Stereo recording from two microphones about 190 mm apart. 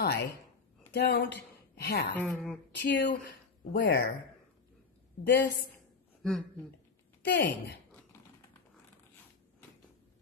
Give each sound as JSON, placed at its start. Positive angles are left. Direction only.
{"t": 0.0, "sound": "a woman's voice", "side_deg": 55}
{"t": 2.1, "sound": "speech", "side_deg": 10}
{"t": 2.7, "sound": "a woman's voice", "side_deg": 65}
{"t": 5.2, "sound": "a woman's voice", "side_deg": 65}
{"t": 6.2, "sound": "speech", "side_deg": 5}
{"t": 7.3, "sound": "a woman's voice", "side_deg": 65}